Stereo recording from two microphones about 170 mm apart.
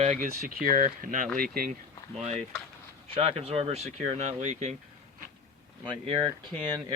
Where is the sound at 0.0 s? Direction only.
45° right (ahead or behind).